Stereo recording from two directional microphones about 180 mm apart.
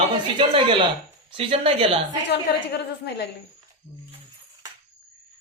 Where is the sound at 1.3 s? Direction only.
30° right (ahead or behind).